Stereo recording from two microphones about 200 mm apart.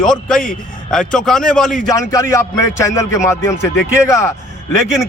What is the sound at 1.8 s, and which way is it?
Speech, 20° left (ahead or behind).